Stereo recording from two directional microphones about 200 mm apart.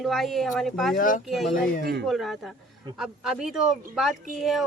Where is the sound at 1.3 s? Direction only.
Centre (ahead or behind).